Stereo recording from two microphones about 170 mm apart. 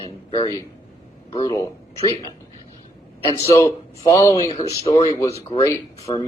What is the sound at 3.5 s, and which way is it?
Speech, 20° left (ahead or behind).